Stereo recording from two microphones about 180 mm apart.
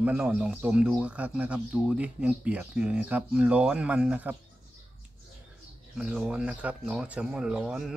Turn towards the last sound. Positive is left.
turn(degrees=-5)  # may be behind; listen again after turning